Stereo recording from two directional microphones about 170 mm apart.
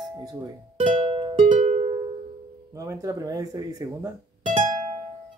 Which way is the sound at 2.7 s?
20° right (ahead or behind).